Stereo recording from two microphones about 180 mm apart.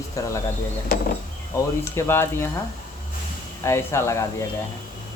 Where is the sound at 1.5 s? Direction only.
15° left (ahead or behind).